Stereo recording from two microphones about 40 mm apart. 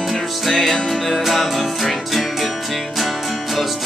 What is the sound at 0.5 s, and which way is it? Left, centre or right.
Music, centre.